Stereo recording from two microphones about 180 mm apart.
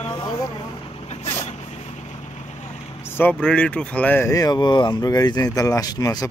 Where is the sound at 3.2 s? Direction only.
10° left (ahead or behind).